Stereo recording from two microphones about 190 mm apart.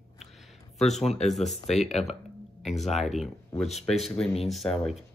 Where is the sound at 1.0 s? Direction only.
35° left (ahead or behind).